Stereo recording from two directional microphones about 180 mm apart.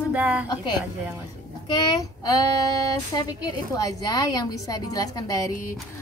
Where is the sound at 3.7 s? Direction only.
20° left (ahead or behind).